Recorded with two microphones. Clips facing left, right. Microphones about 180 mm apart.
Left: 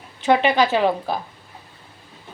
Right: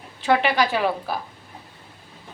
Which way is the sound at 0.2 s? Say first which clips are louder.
Left 3 dB; 20° left (ahead or behind).